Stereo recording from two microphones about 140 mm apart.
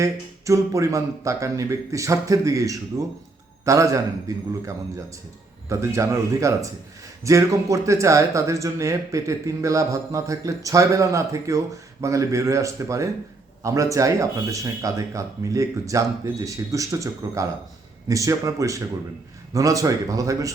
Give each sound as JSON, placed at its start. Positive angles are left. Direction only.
{"t": 0.0, "sound": "speech", "side_deg": -20}
{"t": 5.6, "sound": "speech", "side_deg": -20}